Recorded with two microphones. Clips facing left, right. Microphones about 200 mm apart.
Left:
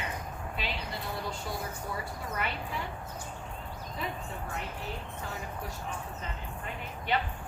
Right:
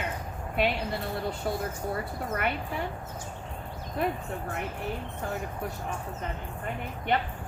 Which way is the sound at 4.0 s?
55° right (ahead or behind).